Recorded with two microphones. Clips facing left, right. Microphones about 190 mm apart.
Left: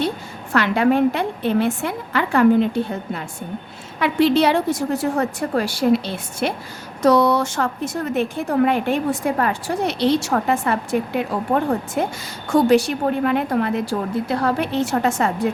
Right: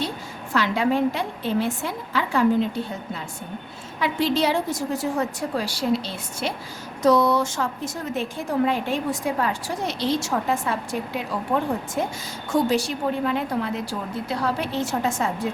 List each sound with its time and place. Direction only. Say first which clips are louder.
0.5 s a woman's voice: left 5 dB; 60° left (ahead or behind)
7.0 s a woman's voice: left 3 dB; 70° left (ahead or behind)